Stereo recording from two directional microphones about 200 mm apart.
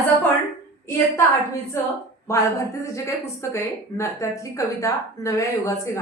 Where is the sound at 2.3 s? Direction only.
15° left (ahead or behind).